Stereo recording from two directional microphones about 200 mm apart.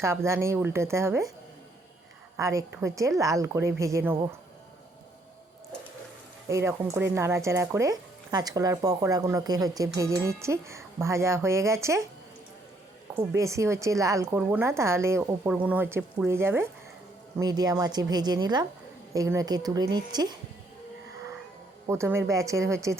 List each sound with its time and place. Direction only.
0.0 s speech: 15° right (ahead or behind)
2.4 s speech: 15° right (ahead or behind)
6.5 s speech: 15° right (ahead or behind)
13.3 s speech: 15° right (ahead or behind)
21.8 s speech: 15° right (ahead or behind)